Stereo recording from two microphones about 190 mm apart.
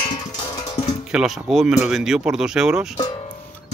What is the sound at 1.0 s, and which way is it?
Speech, centre (ahead or behind).